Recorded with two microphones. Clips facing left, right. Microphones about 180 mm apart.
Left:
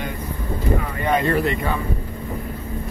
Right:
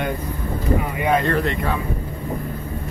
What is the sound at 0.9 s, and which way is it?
Speech, 10° right (ahead or behind).